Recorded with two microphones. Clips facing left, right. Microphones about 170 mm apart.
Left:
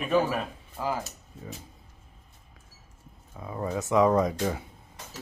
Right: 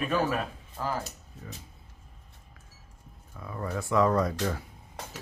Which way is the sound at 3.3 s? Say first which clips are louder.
Left 3 dB; 20° left (ahead or behind).